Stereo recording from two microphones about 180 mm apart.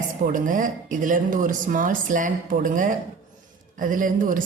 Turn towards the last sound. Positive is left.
turn(degrees=-50)  # may be behind; listen again after turning